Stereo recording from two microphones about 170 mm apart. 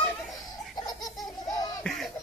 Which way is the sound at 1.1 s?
20° left (ahead or behind).